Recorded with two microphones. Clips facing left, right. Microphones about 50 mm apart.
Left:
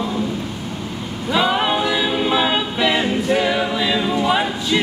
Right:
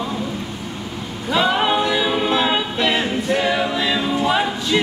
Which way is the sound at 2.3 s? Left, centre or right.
Centre.